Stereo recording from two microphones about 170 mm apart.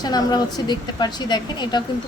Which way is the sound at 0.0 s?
25° left (ahead or behind).